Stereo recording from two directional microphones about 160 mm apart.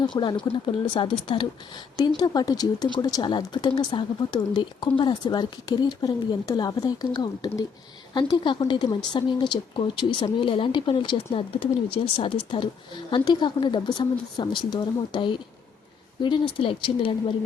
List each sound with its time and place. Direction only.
0.0 s speech: 25° left (ahead or behind)